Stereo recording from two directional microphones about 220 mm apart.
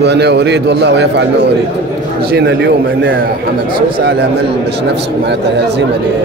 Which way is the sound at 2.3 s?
50° right (ahead or behind).